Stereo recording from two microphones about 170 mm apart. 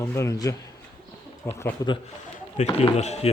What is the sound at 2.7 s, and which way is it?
Speech, 40° left (ahead or behind).